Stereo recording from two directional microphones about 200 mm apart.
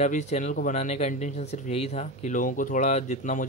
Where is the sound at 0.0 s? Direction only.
35° left (ahead or behind).